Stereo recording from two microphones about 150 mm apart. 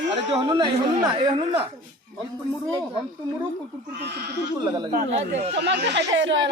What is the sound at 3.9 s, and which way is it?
Speech, 90° right.